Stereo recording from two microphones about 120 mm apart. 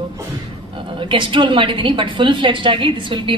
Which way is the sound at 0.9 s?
45° right (ahead or behind).